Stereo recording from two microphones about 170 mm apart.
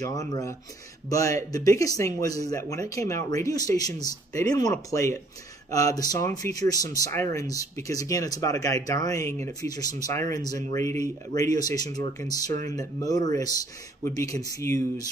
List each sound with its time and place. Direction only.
0.0 s speech: 20° left (ahead or behind)